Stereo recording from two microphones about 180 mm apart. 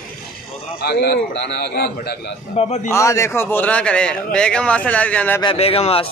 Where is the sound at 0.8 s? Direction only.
60° left (ahead or behind).